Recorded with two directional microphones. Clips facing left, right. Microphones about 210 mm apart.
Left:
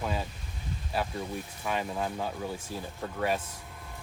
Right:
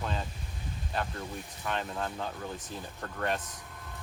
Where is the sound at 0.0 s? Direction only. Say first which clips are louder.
Left 3 dB; 5° left (ahead or behind).